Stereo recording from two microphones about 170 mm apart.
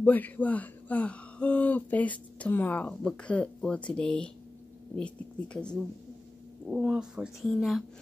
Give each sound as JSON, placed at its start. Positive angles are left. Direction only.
{"t": 0.0, "sound": "speech", "side_deg": 10}
{"t": 6.6, "sound": "speech", "side_deg": -5}